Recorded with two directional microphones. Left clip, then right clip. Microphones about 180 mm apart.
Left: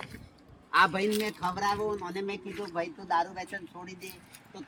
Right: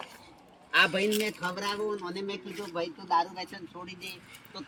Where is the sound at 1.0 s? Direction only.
60° left (ahead or behind).